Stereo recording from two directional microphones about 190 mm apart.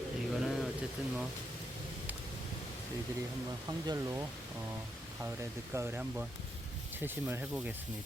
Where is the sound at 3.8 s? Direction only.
15° right (ahead or behind).